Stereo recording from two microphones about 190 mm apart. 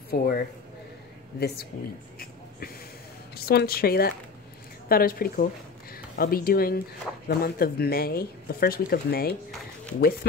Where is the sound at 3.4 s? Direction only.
55° left (ahead or behind).